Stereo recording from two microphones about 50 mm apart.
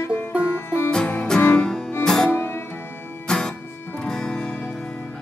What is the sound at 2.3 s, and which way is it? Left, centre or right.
Music, left.